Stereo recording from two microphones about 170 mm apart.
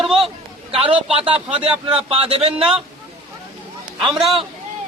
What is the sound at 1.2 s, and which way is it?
A man's voice, 35° right (ahead or behind).